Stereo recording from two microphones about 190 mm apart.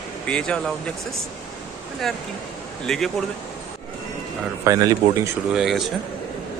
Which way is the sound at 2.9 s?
Centre (ahead or behind).